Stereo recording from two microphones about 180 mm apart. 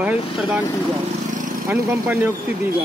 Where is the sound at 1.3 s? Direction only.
45° right (ahead or behind).